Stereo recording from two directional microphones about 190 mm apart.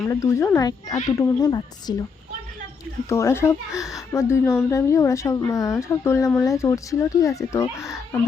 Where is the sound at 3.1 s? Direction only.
15° left (ahead or behind).